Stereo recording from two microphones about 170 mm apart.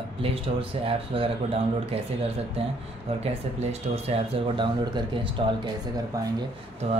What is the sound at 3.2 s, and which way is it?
Speech, 40° right (ahead or behind).